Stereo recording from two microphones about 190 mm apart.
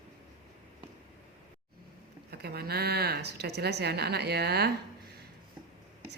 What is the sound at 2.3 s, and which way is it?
A woman's voice, 55° right (ahead or behind).